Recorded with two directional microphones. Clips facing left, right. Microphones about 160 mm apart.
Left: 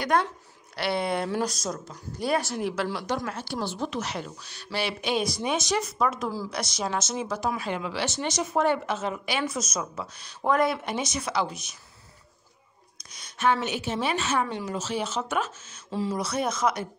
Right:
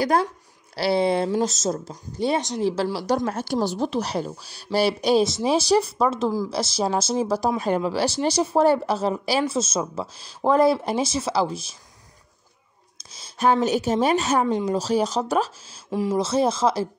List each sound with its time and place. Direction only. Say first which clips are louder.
0.7 s a woman's voice: right 7 dB; 30° right (ahead or behind)
3.3 s speech: right 8 dB; 45° right (ahead or behind)
13.1 s speech: right 4 dB; 30° right (ahead or behind)
15.9 s speech: right 5 dB; 15° right (ahead or behind)
16.2 s a woman's voice: right 9 dB; 30° right (ahead or behind)